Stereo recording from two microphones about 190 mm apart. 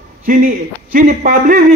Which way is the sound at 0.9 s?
45° right (ahead or behind).